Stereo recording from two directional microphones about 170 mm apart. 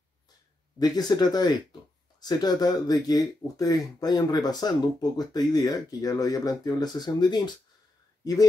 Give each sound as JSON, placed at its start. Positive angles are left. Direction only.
{"t": 0.7, "sound": "speech", "side_deg": 25}